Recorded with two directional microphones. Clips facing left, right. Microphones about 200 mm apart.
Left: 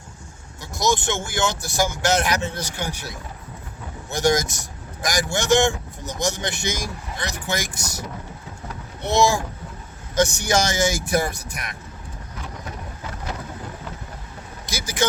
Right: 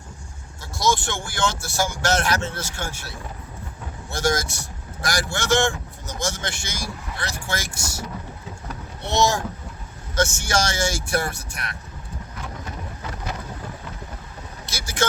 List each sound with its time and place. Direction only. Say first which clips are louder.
0.6 s speech: left 1 dB; 20° left (ahead or behind)
10.2 s speech: left 3 dB; 15° left (ahead or behind)
14.7 s vehicle: left 3 dB; 15° left (ahead or behind)